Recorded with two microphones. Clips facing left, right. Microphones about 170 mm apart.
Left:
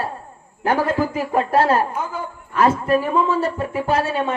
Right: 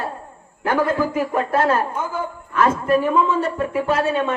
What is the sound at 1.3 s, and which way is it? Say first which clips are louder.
A woman's voice: left 4 dB; 35° left (ahead or behind).